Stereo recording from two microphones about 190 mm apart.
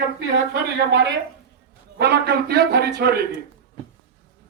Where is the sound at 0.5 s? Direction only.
65° right (ahead or behind).